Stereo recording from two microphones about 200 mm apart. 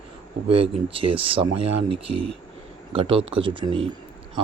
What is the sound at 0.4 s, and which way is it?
Speech, 30° right (ahead or behind).